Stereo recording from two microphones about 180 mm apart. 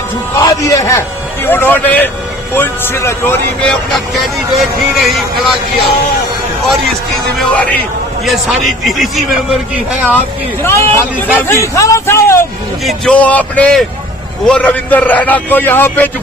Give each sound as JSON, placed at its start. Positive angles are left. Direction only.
{"t": 0.3, "sound": "a man's voice", "side_deg": 20}
{"t": 4.1, "sound": "a man's voice", "side_deg": 0}
{"t": 7.3, "sound": "a man's voice", "side_deg": 10}
{"t": 10.6, "sound": "a man's voice", "side_deg": 15}
{"t": 12.8, "sound": "a man's voice", "side_deg": 0}